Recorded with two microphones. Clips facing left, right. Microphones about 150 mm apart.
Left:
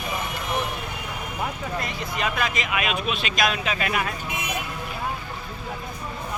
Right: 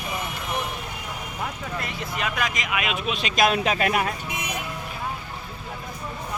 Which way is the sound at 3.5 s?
40° right (ahead or behind).